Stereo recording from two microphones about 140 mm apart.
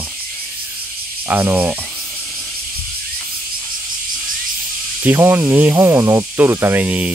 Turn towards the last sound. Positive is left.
turn(degrees=-10)  # may be behind; listen again after turning